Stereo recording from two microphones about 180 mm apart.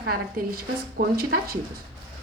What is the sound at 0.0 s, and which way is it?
A woman's voice, 55° right (ahead or behind).